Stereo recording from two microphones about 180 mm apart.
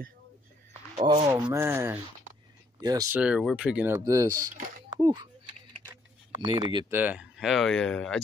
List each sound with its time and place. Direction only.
1.0 s speech: 30° right (ahead or behind)
1.3 s speech: 15° right (ahead or behind)
3.2 s speech: 5° right (ahead or behind)
4.3 s speech: 50° right (ahead or behind)
4.9 s speech: 25° right (ahead or behind)
6.4 s speech: 25° right (ahead or behind)
6.9 s speech: 10° right (ahead or behind)